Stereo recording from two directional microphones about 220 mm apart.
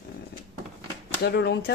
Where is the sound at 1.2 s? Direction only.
50° left (ahead or behind).